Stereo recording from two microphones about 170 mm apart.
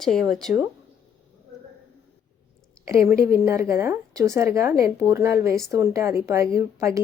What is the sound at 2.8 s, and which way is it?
A woman's voice, 15° right (ahead or behind).